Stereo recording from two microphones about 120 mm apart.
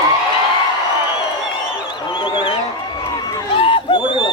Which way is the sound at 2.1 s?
45° left (ahead or behind).